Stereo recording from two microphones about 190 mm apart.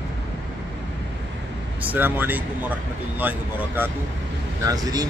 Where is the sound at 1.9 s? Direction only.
10° right (ahead or behind).